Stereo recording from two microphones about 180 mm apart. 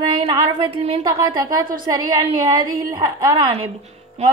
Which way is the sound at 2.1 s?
20° right (ahead or behind).